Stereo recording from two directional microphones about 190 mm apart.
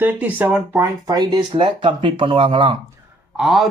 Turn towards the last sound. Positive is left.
turn(degrees=0)  # may be behind; listen again after turning